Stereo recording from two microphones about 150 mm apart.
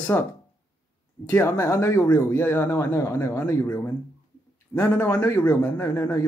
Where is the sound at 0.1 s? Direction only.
15° left (ahead or behind).